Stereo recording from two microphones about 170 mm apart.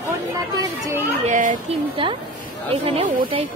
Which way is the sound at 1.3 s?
50° right (ahead or behind).